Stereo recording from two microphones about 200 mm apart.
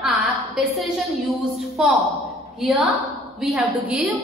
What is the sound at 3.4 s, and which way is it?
Speech, 5° right (ahead or behind).